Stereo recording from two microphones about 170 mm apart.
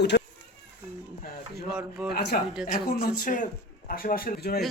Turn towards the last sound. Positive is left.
turn(degrees=65)  # may be behind; listen again after turning